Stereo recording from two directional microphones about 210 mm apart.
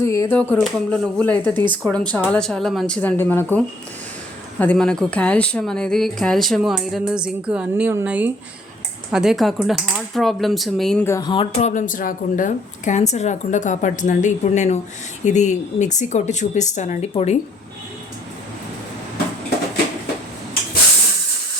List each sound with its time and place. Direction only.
0.0 s speech: 15° left (ahead or behind)
4.6 s speech: 5° left (ahead or behind); by 11.7 s 25° left (ahead or behind)
11.7 s speech: 40° left (ahead or behind)